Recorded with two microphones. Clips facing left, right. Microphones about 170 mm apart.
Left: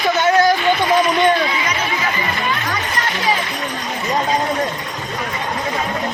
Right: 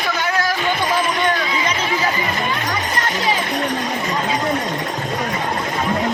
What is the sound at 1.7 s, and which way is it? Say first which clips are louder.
Music: right 1 dB; 30° right (ahead or behind).